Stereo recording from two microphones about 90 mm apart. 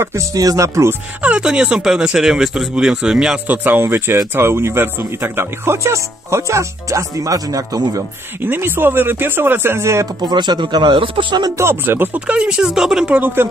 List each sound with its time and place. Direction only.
0.0 s speech: 35° right (ahead or behind)
1.2 s speech: 15° right (ahead or behind)
3.4 s speech: 20° right (ahead or behind); by 7.8 s 45° right (ahead or behind)
8.5 s speech: 25° right (ahead or behind)
10.2 s speech: 55° right (ahead or behind)
11.5 s speech: 25° right (ahead or behind)